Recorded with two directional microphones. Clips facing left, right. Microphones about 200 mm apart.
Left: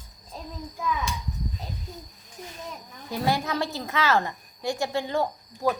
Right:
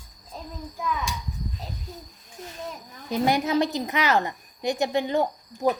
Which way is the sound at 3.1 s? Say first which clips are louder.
Right 4 dB; 20° right (ahead or behind).